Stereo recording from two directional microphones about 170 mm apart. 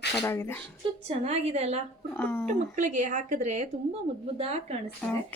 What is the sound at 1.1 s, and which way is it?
Speech, 40° right (ahead or behind).